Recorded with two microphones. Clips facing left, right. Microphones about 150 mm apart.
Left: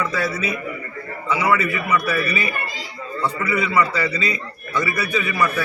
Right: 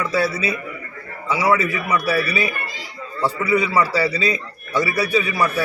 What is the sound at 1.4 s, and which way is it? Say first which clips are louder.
A man's voice: right 2 dB; 35° right (ahead or behind).